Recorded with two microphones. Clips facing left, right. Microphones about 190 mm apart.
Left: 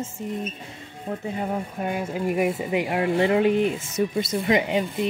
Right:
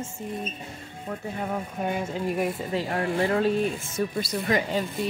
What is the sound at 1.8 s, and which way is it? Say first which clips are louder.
Speech: left 1 dB; 5° left (ahead or behind).